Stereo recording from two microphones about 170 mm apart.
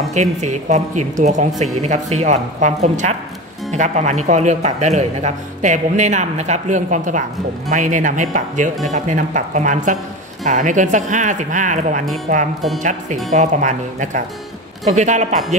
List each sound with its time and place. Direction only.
0.1 s speech: 45° right (ahead or behind)